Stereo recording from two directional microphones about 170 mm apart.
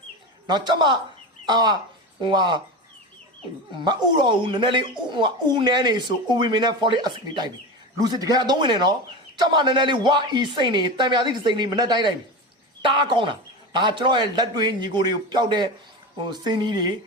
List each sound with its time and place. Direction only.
0.4 s speech: 25° right (ahead or behind)
3.8 s speech: 25° right (ahead or behind)